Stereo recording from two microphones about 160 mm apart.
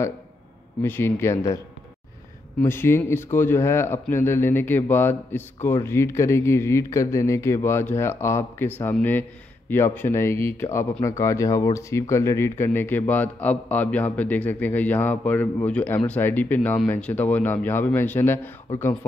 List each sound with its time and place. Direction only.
0.8 s speech: 15° left (ahead or behind)
2.6 s speech: 15° left (ahead or behind)